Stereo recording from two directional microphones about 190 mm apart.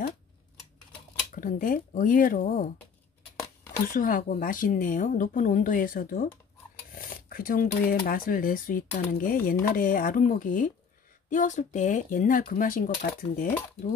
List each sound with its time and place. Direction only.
1.3 s a woman's voice: 45° left (ahead or behind)
3.8 s a woman's voice: 45° left (ahead or behind)
7.2 s a sound: 50° left (ahead or behind)
7.9 s a woman's voice: 50° left (ahead or behind)